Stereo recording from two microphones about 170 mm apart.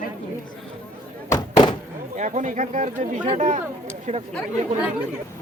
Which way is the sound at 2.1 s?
45° right (ahead or behind).